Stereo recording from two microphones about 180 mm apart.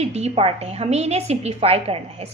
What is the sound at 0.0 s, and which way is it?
A woman's voice, 35° right (ahead or behind).